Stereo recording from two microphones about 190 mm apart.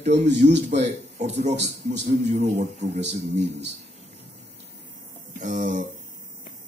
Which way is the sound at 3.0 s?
65° right (ahead or behind).